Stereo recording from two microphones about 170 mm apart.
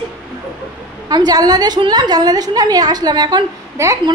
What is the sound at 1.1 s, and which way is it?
A woman's voice, 25° right (ahead or behind).